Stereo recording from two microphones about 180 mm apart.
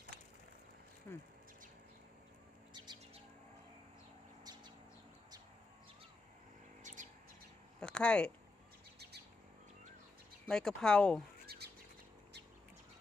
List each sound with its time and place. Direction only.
1.1 s speech: 15° left (ahead or behind)
2.7 s bird: 25° right (ahead or behind)
6.8 s bird: 45° right (ahead or behind)
7.8 s a sound: 5° left (ahead or behind)
10.5 s speech: 5° left (ahead or behind)
11.4 s bird: 60° right (ahead or behind)